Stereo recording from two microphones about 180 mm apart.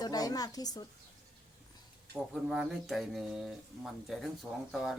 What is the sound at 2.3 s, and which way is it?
Speech, 5° right (ahead or behind).